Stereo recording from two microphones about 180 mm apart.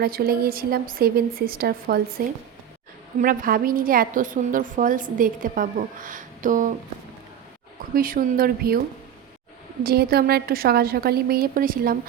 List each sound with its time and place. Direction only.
0.0 s a woman's voice: 55° right (ahead or behind)
7.9 s a woman's voice: 50° right (ahead or behind)
9.8 s a woman's voice: 60° right (ahead or behind)